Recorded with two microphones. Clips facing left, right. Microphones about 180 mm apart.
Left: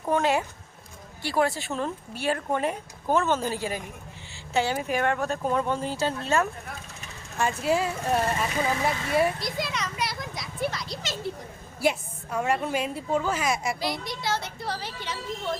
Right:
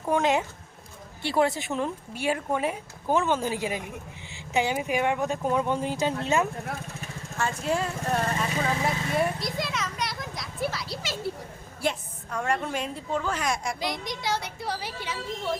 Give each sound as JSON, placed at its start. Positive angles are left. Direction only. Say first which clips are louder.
{"t": 0.1, "sound": "speech", "louder": "even", "side_deg": -20}
{"t": 7.3, "sound": "speech", "louder": "left 3 dB", "side_deg": 10}
{"t": 9.1, "sound": "a sound", "louder": "left 5 dB", "side_deg": 0}
{"t": 11.8, "sound": "a woman's voice", "louder": "left 4 dB", "side_deg": 10}
{"t": 13.7, "sound": "speech", "louder": "left 1 dB", "side_deg": -20}